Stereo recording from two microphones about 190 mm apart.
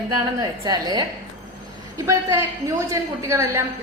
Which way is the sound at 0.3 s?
20° right (ahead or behind).